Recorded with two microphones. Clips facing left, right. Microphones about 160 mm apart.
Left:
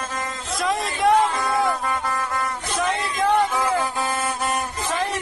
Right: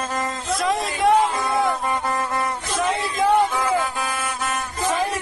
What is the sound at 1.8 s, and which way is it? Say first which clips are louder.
Music: right 2 dB; 25° right (ahead or behind).